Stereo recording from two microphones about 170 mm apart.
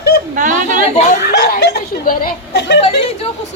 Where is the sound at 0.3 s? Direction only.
50° right (ahead or behind).